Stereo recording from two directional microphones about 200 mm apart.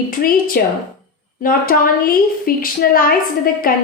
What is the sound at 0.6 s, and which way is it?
A woman's voice, 50° left (ahead or behind).